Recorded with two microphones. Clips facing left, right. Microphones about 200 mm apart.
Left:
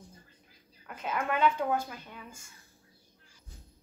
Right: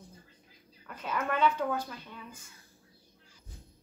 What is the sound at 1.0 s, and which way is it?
Speech, 10° left (ahead or behind).